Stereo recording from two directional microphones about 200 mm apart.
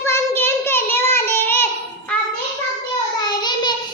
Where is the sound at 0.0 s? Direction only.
10° left (ahead or behind).